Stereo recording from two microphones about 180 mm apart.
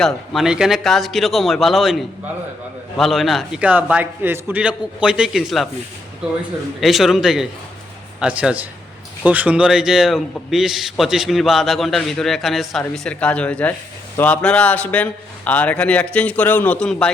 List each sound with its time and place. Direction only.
0.0 s a man's voice: centre (ahead or behind)
6.7 s a man's voice: centre (ahead or behind)